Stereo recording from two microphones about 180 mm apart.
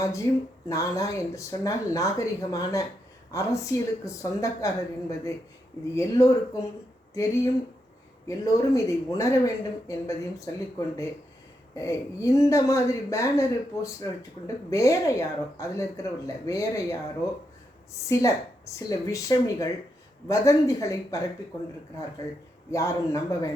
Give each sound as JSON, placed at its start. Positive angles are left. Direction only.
{"t": 0.0, "sound": "speech", "side_deg": 15}
{"t": 18.1, "sound": "speech", "side_deg": 15}
{"t": 22.7, "sound": "speech", "side_deg": 15}